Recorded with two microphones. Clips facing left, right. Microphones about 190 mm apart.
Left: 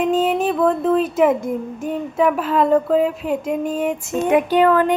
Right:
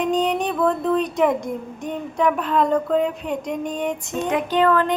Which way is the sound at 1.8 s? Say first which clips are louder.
Left 3 dB; 5° left (ahead or behind).